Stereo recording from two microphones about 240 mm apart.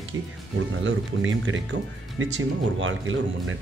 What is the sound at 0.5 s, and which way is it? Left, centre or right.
Speech, right.